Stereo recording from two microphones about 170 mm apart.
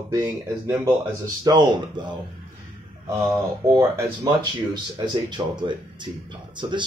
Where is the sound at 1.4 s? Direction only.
25° right (ahead or behind).